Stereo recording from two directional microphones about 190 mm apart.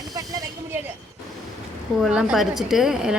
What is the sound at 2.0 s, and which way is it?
Speech, 5° right (ahead or behind).